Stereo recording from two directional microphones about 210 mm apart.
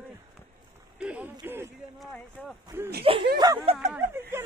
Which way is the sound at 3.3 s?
20° right (ahead or behind).